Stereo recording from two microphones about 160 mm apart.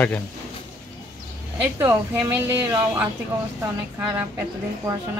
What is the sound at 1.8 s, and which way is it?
A woman's voice, 15° right (ahead or behind).